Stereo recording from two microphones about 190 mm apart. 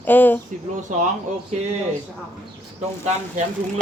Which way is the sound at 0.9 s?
40° right (ahead or behind).